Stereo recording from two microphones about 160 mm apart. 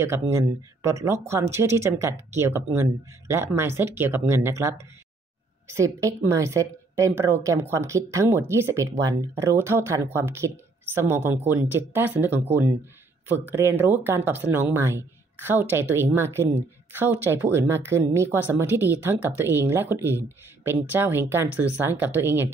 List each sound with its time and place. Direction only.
0.0 s a woman's voice: 15° right (ahead or behind)